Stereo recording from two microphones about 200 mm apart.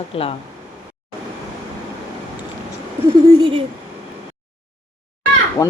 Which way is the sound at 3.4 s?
25° right (ahead or behind).